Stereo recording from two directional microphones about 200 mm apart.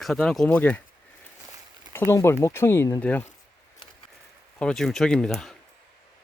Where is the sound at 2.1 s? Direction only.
15° left (ahead or behind).